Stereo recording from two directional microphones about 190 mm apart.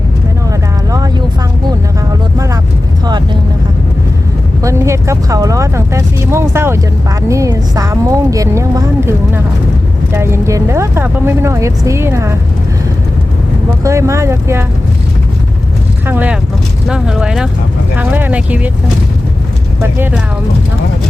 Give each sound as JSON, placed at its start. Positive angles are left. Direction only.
{"t": 0.9, "sound": "vehicle", "side_deg": -20}
{"t": 4.6, "sound": "speech", "side_deg": -15}
{"t": 13.8, "sound": "speech", "side_deg": -15}
{"t": 16.0, "sound": "speech", "side_deg": -10}
{"t": 19.8, "sound": "speech", "side_deg": -10}